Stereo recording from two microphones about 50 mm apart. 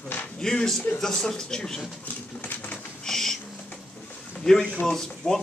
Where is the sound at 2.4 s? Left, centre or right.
Left.